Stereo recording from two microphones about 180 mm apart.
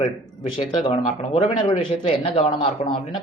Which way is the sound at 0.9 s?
35° left (ahead or behind).